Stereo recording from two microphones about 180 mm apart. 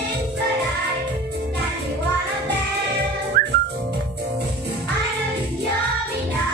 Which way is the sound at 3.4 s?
55° right (ahead or behind).